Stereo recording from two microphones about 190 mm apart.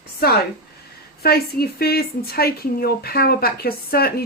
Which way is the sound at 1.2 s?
55° left (ahead or behind).